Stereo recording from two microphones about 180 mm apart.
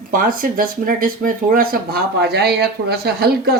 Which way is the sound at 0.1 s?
50° right (ahead or behind).